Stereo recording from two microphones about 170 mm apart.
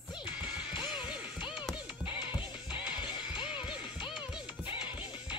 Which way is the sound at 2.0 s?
30° left (ahead or behind).